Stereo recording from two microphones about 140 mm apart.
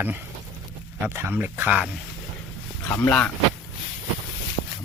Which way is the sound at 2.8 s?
15° left (ahead or behind).